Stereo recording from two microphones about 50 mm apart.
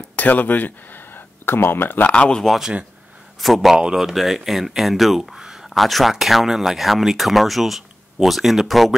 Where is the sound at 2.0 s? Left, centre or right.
Left.